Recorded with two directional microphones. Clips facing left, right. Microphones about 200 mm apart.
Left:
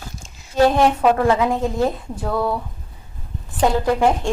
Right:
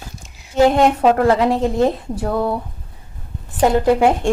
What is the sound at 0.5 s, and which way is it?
Speech, 20° right (ahead or behind).